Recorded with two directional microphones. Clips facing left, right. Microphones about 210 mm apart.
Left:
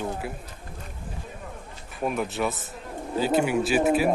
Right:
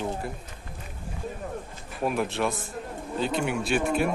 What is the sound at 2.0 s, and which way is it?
Speech, centre (ahead or behind).